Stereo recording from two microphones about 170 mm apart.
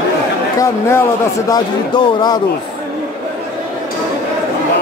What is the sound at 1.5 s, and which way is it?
Speech, 25° left (ahead or behind).